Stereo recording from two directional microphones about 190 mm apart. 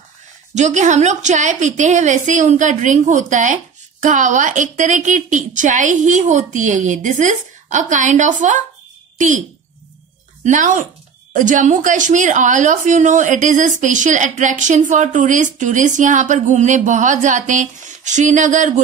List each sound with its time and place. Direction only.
0.6 s a woman's voice: 40° right (ahead or behind)
10.4 s a woman's voice: 40° right (ahead or behind)